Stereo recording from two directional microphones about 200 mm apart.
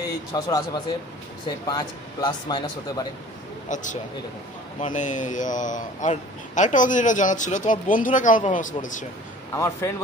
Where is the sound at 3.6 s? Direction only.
40° left (ahead or behind).